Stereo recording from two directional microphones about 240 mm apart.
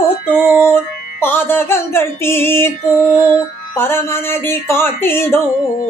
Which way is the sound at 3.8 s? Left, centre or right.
Centre.